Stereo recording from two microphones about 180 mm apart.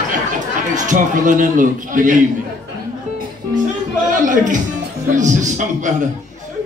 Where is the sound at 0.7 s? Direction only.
45° right (ahead or behind).